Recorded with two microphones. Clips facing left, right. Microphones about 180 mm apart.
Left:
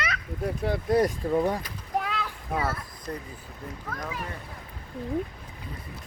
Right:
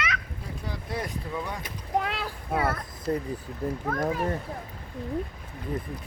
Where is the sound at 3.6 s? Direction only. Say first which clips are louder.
Right 9 dB; 35° right (ahead or behind).